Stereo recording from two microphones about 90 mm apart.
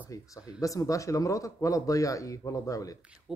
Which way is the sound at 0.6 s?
40° left (ahead or behind).